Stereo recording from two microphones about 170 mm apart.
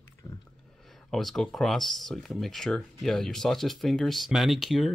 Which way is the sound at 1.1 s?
Centre (ahead or behind).